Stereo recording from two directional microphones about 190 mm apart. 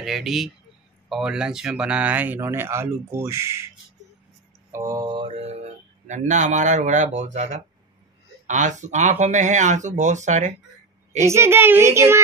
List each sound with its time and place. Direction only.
0.0 s speech: centre (ahead or behind)
4.7 s mantra: 15° right (ahead or behind)
6.0 s speech: 40° right (ahead or behind)
11.2 s speech: 15° right (ahead or behind)